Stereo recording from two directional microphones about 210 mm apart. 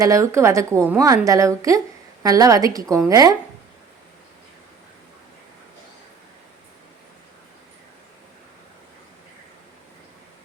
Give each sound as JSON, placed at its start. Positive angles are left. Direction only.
{"t": 0.0, "sound": "a woman's voice", "side_deg": -15}